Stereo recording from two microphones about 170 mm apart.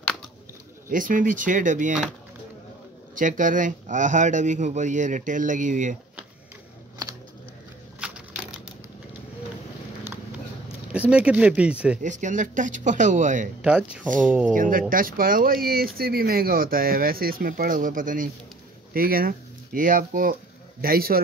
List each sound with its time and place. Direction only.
0.8 s speech: 55° right (ahead or behind)
3.2 s speech: 50° right (ahead or behind)
8.0 s a sound: 5° right (ahead or behind)
10.9 s speech: 5° right (ahead or behind)
12.0 s speech: 45° right (ahead or behind)
13.6 s speech: 5° right (ahead or behind)
14.5 s speech: 55° right (ahead or behind)